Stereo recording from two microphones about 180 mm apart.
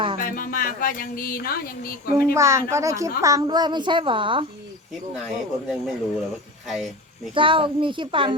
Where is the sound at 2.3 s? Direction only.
15° right (ahead or behind).